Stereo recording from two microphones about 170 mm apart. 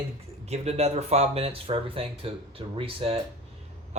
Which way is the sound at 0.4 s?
40° right (ahead or behind).